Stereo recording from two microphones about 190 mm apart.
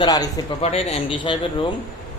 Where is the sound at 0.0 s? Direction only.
20° left (ahead or behind).